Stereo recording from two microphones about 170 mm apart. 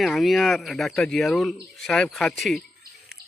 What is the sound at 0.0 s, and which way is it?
A man's voice, centre (ahead or behind).